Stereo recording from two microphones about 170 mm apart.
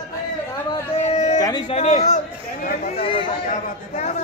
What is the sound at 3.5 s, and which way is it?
Chatter, 40° left (ahead or behind).